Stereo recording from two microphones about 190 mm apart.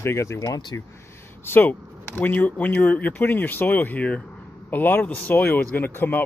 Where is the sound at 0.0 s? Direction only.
15° left (ahead or behind).